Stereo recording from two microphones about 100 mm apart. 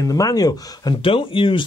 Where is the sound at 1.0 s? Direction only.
65° left (ahead or behind).